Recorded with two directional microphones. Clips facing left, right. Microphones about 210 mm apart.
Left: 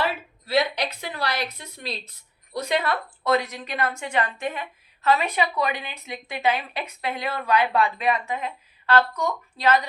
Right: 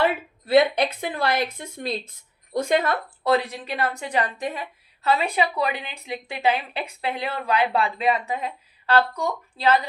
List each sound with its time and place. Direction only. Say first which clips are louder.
0.0 s a woman's voice: right 4 dB; 55° right (ahead or behind)
3.2 s a woman's voice: right 2 dB; 30° right (ahead or behind)